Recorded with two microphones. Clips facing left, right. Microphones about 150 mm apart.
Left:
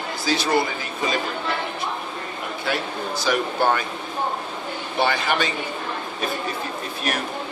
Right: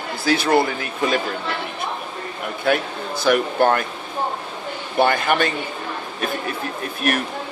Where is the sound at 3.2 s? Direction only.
55° right (ahead or behind).